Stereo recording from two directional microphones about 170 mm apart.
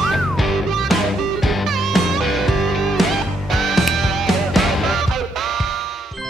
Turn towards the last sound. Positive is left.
turn(degrees=0)  # may be behind; listen again after turning